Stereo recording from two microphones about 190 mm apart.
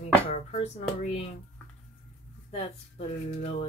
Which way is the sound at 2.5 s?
30° left (ahead or behind).